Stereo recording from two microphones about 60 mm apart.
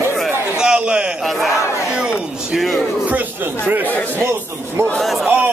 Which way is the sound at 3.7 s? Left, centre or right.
Right.